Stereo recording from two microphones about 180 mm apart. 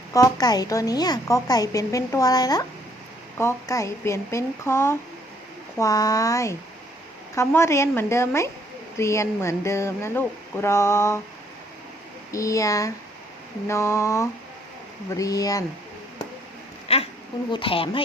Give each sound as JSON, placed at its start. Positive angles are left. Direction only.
{"t": 0.1, "sound": "a woman's voice", "side_deg": 20}
{"t": 12.3, "sound": "a woman's voice", "side_deg": 20}
{"t": 16.9, "sound": "a sound", "side_deg": 35}
{"t": 17.5, "sound": "a woman's voice", "side_deg": 30}